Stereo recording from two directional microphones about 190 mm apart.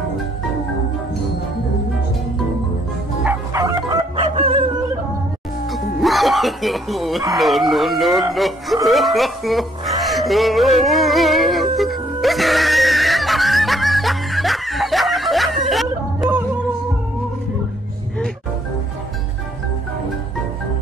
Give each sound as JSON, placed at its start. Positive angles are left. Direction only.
{"t": 3.3, "sound": "bow-wow", "side_deg": -15}
{"t": 4.4, "sound": "dog", "side_deg": -30}
{"t": 5.9, "sound": "music", "side_deg": 0}
{"t": 7.3, "sound": "speech", "side_deg": 0}
{"t": 8.8, "sound": "a sound", "side_deg": 0}